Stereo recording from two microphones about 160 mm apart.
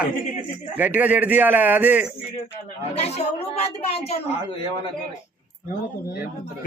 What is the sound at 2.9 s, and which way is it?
A woman's voice, 40° left (ahead or behind).